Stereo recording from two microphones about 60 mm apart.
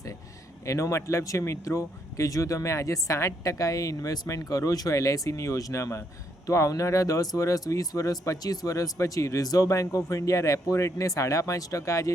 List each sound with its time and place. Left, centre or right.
0.6 s speech: left